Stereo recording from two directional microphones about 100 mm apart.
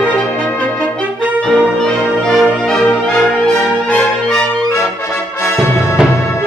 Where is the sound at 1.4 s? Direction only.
5° left (ahead or behind).